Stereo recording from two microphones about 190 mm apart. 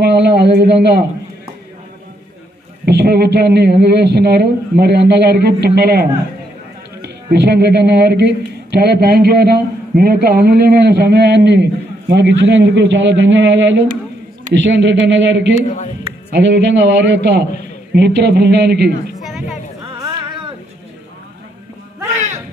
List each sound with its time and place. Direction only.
0.0 s a man's voice: 65° right (ahead or behind)
2.8 s a man's voice: 60° right (ahead or behind)
20.0 s a sound: 25° right (ahead or behind)